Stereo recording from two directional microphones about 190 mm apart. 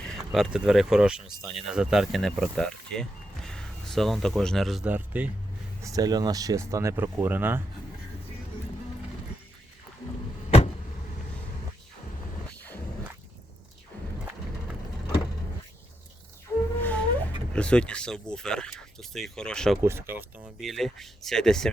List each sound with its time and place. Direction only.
0.3 s speech: centre (ahead or behind)
5.8 s speech: 20° right (ahead or behind)
16.8 s speech: 10° left (ahead or behind)
19.8 s speech: 15° right (ahead or behind)
20.6 s speech: centre (ahead or behind)